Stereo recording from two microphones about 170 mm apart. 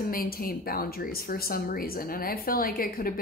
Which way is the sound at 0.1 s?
60° left (ahead or behind).